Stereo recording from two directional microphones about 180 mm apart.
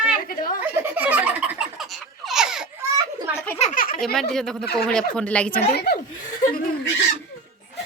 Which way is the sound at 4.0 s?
Centre (ahead or behind).